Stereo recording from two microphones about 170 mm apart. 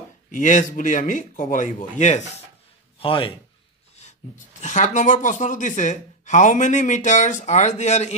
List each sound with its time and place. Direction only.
0.3 s speech: 50° left (ahead or behind)
3.0 s a man's voice: 30° left (ahead or behind)
4.6 s speech: 45° left (ahead or behind)